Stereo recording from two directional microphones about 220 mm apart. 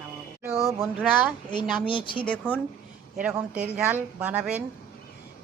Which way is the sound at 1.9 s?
20° left (ahead or behind).